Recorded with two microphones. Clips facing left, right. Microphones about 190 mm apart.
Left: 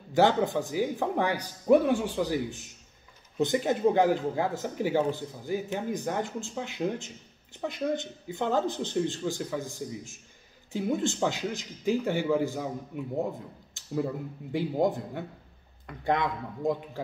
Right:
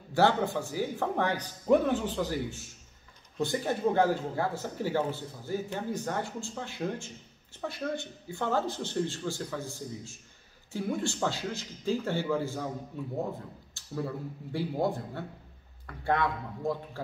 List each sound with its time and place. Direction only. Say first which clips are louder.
0.1 s a man's voice: left 2 dB; 15° left (ahead or behind)